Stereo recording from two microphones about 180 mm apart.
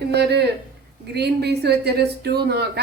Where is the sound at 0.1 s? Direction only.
65° right (ahead or behind).